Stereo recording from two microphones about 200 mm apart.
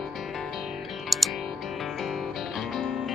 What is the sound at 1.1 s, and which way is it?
Music, centre (ahead or behind).